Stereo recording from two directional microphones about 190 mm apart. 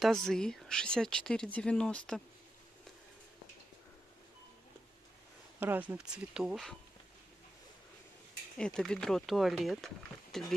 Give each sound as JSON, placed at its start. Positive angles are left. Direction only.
{"t": 0.3, "sound": "speech", "side_deg": 5}
{"t": 5.6, "sound": "speech", "side_deg": -10}
{"t": 8.5, "sound": "speech", "side_deg": 5}